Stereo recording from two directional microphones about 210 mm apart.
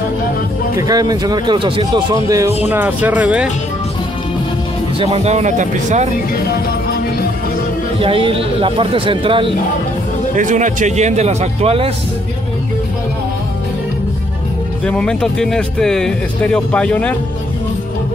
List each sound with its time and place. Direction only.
0.7 s speech: 15° right (ahead or behind)
5.0 s speech: 30° right (ahead or behind)
8.0 s speech: 25° right (ahead or behind)
10.3 s speech: 35° right (ahead or behind)
14.9 s speech: 5° left (ahead or behind)